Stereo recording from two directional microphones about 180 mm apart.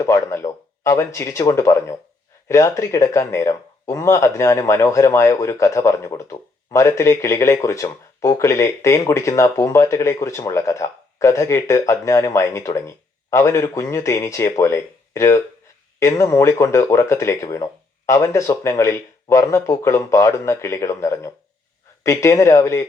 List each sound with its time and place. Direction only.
0.0 s speech: 15° left (ahead or behind)